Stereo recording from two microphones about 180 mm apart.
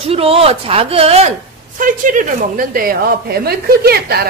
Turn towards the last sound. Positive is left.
turn(degrees=-60)  # may be behind; listen again after turning